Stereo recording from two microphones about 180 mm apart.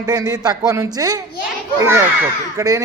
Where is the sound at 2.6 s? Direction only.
20° right (ahead or behind).